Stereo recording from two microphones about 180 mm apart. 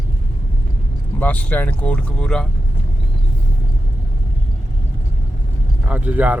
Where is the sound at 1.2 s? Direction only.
10° left (ahead or behind).